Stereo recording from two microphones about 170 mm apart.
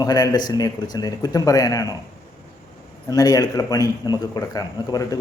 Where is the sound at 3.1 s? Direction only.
20° left (ahead or behind).